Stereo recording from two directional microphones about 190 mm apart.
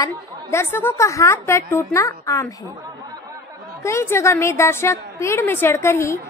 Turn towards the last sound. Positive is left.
turn(degrees=15)  # may be behind; listen again after turning